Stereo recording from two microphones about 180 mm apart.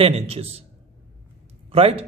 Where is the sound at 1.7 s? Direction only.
30° right (ahead or behind).